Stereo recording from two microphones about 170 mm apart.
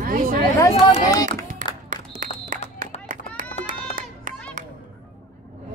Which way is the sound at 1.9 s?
50° right (ahead or behind).